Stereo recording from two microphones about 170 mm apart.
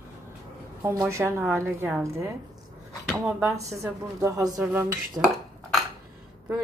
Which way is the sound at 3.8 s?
20° right (ahead or behind).